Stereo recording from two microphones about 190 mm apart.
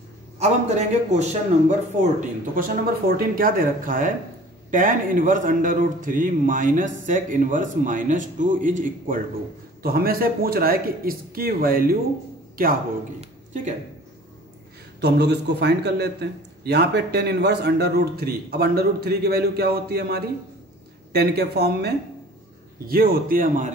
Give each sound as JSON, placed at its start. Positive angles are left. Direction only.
{"t": 0.4, "sound": "a man's voice", "side_deg": -35}
{"t": 2.1, "sound": "a man's voice", "side_deg": -50}
{"t": 13.2, "sound": "a sound", "side_deg": -40}
{"t": 15.0, "sound": "a man's voice", "side_deg": -60}